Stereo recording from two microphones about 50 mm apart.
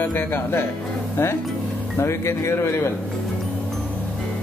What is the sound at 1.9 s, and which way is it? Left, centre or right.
Speech, left.